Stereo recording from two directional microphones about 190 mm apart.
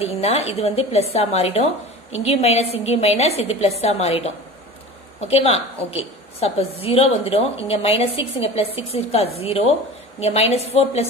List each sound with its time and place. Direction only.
0.0 s a woman's voice: 30° left (ahead or behind)
5.3 s a woman's voice: 35° left (ahead or behind)